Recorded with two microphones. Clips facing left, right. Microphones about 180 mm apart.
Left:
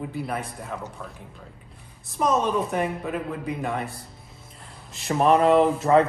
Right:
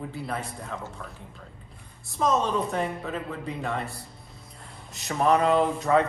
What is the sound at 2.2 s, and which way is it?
Speech, 15° left (ahead or behind).